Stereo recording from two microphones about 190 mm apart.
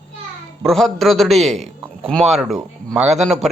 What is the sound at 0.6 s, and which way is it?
Speech, centre (ahead or behind).